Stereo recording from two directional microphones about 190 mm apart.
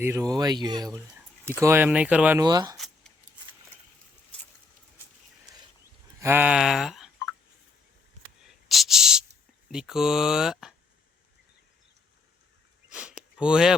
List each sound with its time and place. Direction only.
0.0 s speech: 15° right (ahead or behind)
2.4 s speech: 20° right (ahead or behind)
2.7 s keys jangling: centre (ahead or behind)
6.1 s speech: 10° right (ahead or behind)
8.4 s a sound: centre (ahead or behind)
9.7 s speech: 5° right (ahead or behind)
12.9 s a sound: 5° right (ahead or behind)
13.3 s speech: 5° right (ahead or behind)